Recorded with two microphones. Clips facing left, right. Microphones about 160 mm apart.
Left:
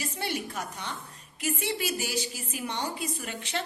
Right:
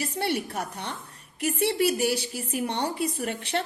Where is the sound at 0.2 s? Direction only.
60° right (ahead or behind).